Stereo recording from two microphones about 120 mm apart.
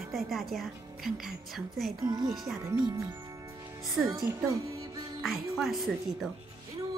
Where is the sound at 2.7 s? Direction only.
35° right (ahead or behind).